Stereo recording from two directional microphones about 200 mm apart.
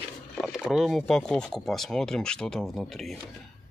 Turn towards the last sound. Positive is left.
turn(degrees=0)  # may be behind; listen again after turning